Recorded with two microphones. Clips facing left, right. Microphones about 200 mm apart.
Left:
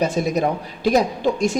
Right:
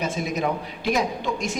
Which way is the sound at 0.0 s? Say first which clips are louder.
Left 6 dB; 35° left (ahead or behind).